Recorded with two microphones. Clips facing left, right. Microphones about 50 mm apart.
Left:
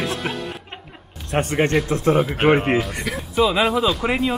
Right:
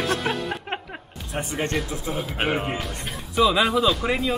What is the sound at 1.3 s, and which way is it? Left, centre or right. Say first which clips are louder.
Speech: left 7 dB; left.